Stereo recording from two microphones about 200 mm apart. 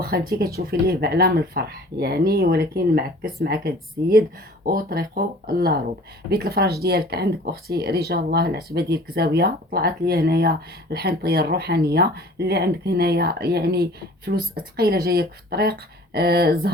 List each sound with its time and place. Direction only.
0.0 s speech: 50° right (ahead or behind)